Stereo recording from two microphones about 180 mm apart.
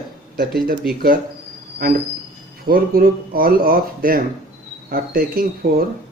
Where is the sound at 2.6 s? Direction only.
60° right (ahead or behind).